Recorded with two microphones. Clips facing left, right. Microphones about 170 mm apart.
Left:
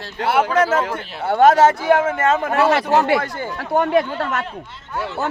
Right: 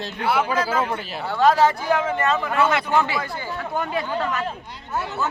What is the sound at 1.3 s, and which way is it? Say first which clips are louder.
Speech: left 5 dB; 50° left (ahead or behind).